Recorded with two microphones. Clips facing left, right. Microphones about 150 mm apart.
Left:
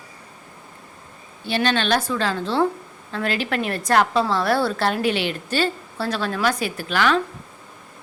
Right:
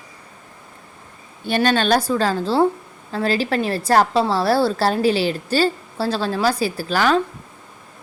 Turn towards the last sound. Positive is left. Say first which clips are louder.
# right 2 dB
turn(degrees=-40)  # may be behind; listen again after turning